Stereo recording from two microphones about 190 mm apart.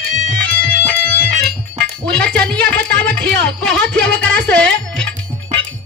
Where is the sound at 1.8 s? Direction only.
5° left (ahead or behind).